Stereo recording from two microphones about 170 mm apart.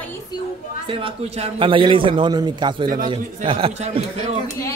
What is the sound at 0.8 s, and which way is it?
A man's voice, 30° right (ahead or behind).